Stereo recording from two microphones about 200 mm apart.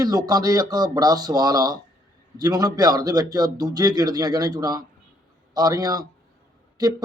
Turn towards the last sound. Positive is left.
turn(degrees=-20)  # may be behind; listen again after turning